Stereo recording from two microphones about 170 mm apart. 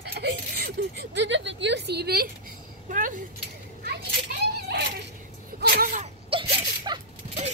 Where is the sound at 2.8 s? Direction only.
50° right (ahead or behind).